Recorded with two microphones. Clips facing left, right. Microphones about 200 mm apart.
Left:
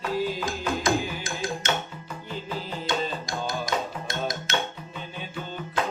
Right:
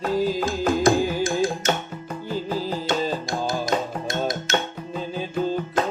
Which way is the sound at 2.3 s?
40° right (ahead or behind).